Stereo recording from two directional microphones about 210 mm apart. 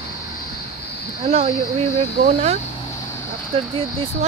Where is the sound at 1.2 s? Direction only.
30° right (ahead or behind).